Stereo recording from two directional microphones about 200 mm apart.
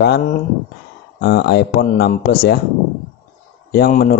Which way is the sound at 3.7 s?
45° left (ahead or behind).